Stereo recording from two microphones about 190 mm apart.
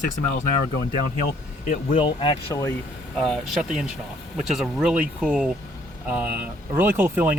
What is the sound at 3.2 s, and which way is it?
Speech, centre (ahead or behind).